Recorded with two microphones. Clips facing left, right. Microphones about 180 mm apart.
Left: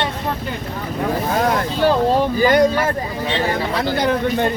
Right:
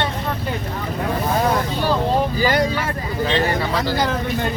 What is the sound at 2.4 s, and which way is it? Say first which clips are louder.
Speech: left 7 dB; 55° left (ahead or behind).